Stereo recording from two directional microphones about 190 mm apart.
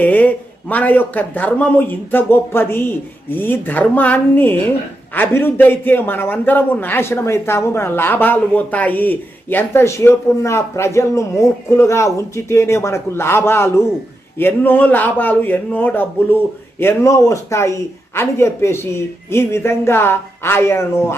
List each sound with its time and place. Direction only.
0.0 s a man's voice: 10° left (ahead or behind)